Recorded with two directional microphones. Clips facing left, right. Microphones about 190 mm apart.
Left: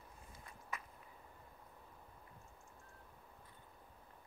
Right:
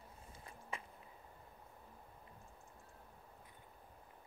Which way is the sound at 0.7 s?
30° right (ahead or behind).